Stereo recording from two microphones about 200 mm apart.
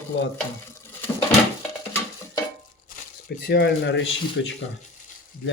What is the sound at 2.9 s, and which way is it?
Speech, 50° left (ahead or behind).